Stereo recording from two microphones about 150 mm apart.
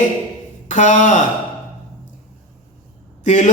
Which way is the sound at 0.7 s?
55° left (ahead or behind).